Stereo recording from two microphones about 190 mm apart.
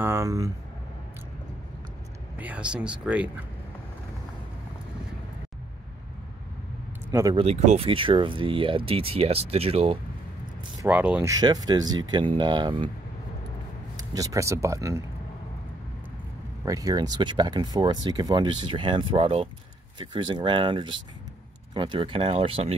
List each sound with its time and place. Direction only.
0.0 s speech: 15° right (ahead or behind)
2.3 s speech: 10° right (ahead or behind)
7.1 s speech: 15° right (ahead or behind)
7.3 s speech: 35° right (ahead or behind)
10.8 s speech: 10° right (ahead or behind); by 12.9 s 25° right (ahead or behind)
13.9 s speech: 20° right (ahead or behind)
16.6 s speech: 20° right (ahead or behind)